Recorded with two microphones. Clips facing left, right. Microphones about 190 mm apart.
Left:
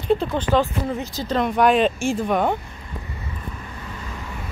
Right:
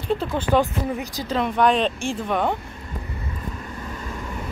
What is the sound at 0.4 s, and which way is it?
Speech, 10° right (ahead or behind).